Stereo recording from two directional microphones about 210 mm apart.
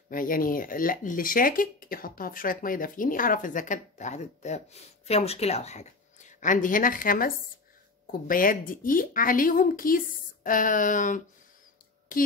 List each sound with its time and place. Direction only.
0.1 s speech: 40° left (ahead or behind)